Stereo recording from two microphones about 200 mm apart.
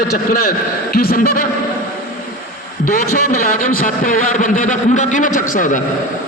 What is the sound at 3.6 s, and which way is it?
A man's voice, 45° left (ahead or behind).